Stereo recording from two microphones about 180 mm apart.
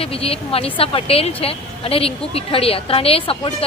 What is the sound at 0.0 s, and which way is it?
Speech, 30° left (ahead or behind).